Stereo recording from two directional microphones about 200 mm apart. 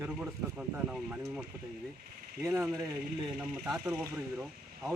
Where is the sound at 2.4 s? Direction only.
15° right (ahead or behind).